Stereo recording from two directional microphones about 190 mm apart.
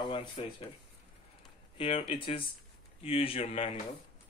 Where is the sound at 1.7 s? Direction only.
30° left (ahead or behind).